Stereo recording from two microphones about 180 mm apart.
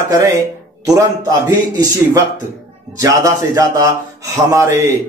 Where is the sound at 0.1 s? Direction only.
20° right (ahead or behind).